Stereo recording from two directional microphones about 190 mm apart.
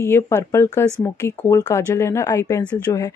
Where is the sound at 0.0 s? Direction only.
15° left (ahead or behind).